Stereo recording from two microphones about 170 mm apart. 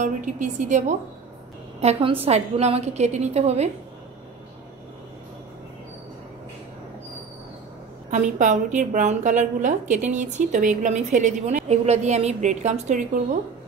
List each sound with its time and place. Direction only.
0.0 s a woman's voice: 50° right (ahead or behind)
1.8 s a woman's voice: 35° right (ahead or behind)
8.1 s a woman's voice: 45° right (ahead or behind)